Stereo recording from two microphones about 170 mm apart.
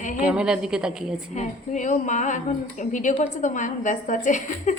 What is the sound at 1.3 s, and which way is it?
A woman's voice, 45° left (ahead or behind).